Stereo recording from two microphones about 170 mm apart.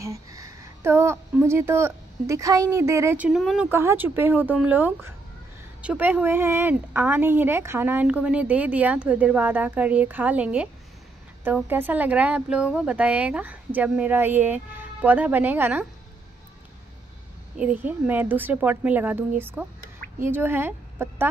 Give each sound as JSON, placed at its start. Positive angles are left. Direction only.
{"t": 0.0, "sound": "a woman's voice", "side_deg": -20}
{"t": 3.7, "sound": "a woman's voice", "side_deg": -15}
{"t": 17.6, "sound": "a woman's voice", "side_deg": -10}